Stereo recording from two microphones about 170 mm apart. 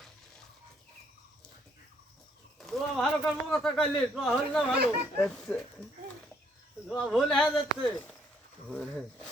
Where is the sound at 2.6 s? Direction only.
Centre (ahead or behind).